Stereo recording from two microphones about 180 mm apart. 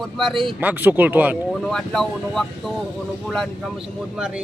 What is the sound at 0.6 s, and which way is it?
Speech, 10° right (ahead or behind).